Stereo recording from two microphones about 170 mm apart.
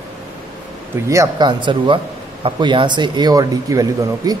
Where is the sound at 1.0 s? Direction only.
20° right (ahead or behind).